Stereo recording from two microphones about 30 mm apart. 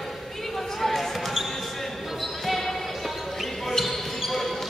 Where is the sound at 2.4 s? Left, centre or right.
Centre.